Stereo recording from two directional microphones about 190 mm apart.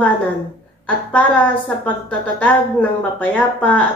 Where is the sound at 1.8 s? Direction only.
5° left (ahead or behind).